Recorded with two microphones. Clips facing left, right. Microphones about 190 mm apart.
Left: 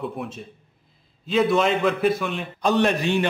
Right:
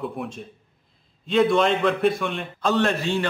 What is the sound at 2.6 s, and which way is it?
Speech, 15° left (ahead or behind).